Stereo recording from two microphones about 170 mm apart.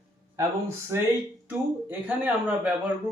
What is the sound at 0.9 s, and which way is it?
Speech, 15° right (ahead or behind).